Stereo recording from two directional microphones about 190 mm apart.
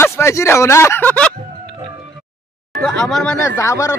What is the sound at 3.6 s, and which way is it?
Speech, 15° left (ahead or behind).